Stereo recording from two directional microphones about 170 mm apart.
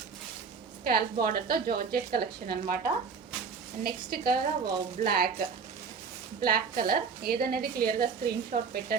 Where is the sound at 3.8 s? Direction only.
65° right (ahead or behind).